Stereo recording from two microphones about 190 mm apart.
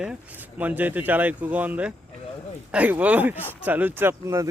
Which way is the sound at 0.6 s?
10° right (ahead or behind).